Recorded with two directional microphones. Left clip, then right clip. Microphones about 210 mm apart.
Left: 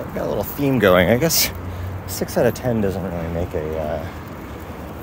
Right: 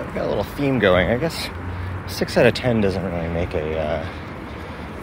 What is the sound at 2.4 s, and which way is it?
Speech, centre (ahead or behind).